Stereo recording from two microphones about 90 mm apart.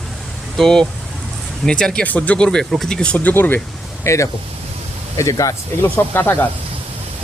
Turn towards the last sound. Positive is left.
turn(degrees=20)  # may be behind; listen again after turning